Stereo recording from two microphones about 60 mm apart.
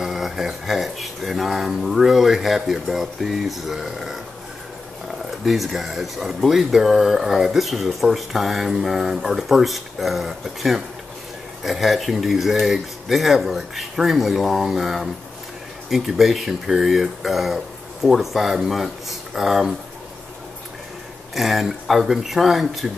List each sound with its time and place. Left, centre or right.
0.0 s speech: centre
5.2 s speech: centre
21.4 s speech: centre